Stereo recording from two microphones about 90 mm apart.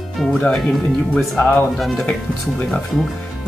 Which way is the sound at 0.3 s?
15° left (ahead or behind).